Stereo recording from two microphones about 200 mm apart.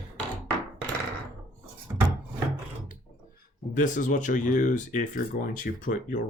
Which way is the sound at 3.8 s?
40° left (ahead or behind).